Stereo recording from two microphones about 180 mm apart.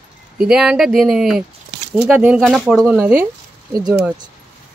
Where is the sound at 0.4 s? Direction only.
5° right (ahead or behind).